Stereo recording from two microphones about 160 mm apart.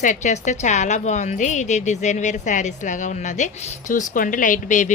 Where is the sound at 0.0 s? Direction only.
50° left (ahead or behind).